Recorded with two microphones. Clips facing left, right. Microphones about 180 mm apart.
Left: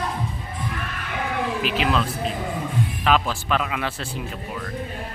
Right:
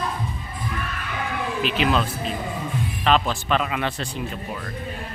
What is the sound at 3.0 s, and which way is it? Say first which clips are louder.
Speech: right 2 dB; 5° left (ahead or behind).